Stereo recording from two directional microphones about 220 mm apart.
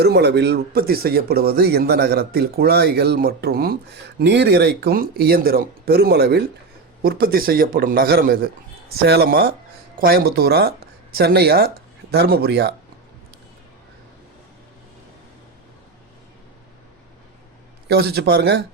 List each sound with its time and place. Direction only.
0.0 s a man's voice: 50° right (ahead or behind)
17.8 s speech: 45° right (ahead or behind)